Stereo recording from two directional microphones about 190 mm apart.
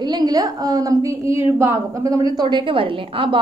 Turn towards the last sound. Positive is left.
turn(degrees=-30)  # may be behind; listen again after turning